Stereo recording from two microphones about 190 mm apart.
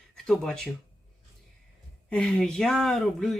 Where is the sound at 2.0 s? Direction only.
5° left (ahead or behind).